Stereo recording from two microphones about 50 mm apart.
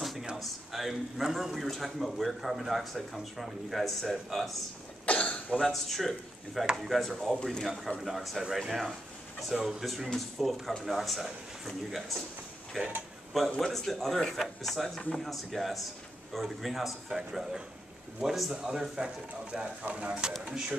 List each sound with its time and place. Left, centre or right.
0.0 s a sound: centre
0.4 s speech: centre
5.0 s cough: left
5.6 s a man's voice: centre; by 20.2 s right
20.3 s speech: centre